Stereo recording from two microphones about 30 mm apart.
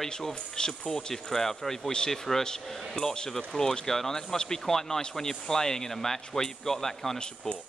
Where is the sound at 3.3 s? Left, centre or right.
Centre.